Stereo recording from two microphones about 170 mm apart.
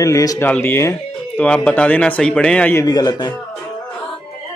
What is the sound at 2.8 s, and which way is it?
Speech, 25° left (ahead or behind).